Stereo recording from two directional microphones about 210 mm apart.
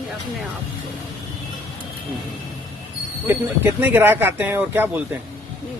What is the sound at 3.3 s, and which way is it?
Speech, 10° right (ahead or behind).